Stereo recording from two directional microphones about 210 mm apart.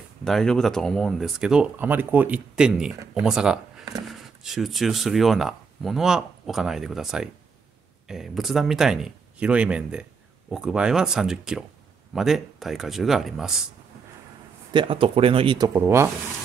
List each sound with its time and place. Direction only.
0.2 s speech: 5° left (ahead or behind)
14.7 s speech: 25° right (ahead or behind)